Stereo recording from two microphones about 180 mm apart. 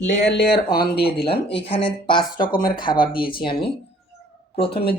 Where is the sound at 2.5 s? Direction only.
50° left (ahead or behind).